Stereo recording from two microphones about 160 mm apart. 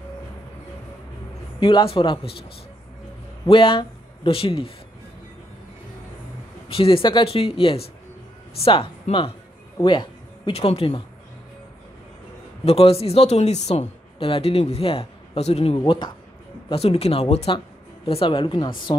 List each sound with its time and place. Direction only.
1.6 s a woman's voice: 30° left (ahead or behind)
3.4 s a man's voice: 35° left (ahead or behind)
6.7 s a woman's voice: 35° left (ahead or behind)
12.6 s a woman's voice: 40° left (ahead or behind)
15.8 s a woman's voice: 30° left (ahead or behind)